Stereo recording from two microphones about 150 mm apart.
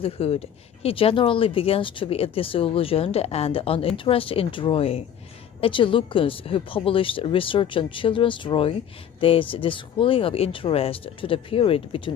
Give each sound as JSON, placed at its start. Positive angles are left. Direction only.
{"t": 0.0, "sound": "speech", "side_deg": 40}